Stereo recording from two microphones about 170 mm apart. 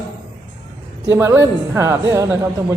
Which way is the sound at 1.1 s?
15° right (ahead or behind).